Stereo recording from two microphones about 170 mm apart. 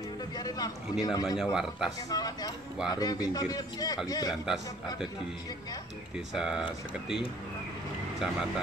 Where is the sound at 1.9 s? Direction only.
20° left (ahead or behind).